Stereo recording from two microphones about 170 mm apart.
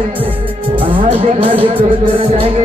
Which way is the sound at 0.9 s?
35° right (ahead or behind).